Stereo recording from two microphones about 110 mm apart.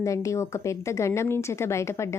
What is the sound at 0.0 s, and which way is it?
A woman's voice, 30° left (ahead or behind).